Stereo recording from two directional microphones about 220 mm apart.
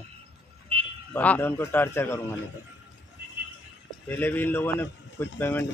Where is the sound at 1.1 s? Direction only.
10° left (ahead or behind).